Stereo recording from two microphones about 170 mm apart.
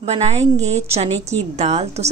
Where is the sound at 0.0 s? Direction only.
40° right (ahead or behind).